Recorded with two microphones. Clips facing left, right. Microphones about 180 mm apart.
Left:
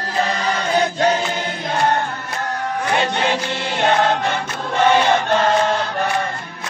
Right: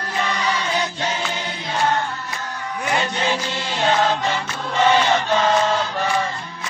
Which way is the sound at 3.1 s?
60° left (ahead or behind).